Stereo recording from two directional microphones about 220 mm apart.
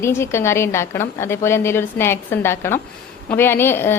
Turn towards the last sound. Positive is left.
turn(degrees=10)  # may be behind; listen again after turning